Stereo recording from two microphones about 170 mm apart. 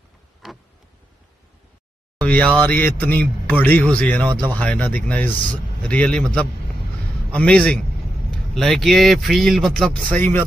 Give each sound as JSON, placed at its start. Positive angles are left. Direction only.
{"t": 2.1, "sound": "speech", "side_deg": 5}
{"t": 4.3, "sound": "speech", "side_deg": -25}
{"t": 4.6, "sound": "speech", "side_deg": 10}